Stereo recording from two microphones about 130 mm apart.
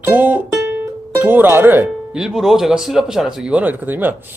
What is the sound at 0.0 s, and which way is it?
Music, 15° right (ahead or behind).